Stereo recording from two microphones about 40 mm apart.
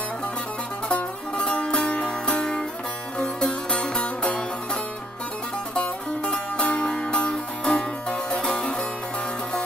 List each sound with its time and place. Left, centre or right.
2.0 s music: left
5.8 s music: left